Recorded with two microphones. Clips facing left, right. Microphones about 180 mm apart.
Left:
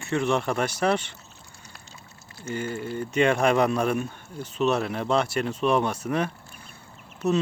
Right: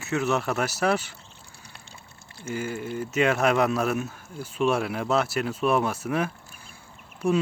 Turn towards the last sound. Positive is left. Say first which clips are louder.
# even
turn(degrees=-10)  # may be behind; listen again after turning